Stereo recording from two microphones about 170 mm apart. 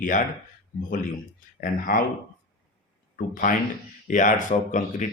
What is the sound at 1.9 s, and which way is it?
Speech, 55° left (ahead or behind).